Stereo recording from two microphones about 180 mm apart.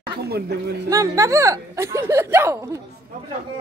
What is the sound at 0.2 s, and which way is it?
Speech, 65° right (ahead or behind).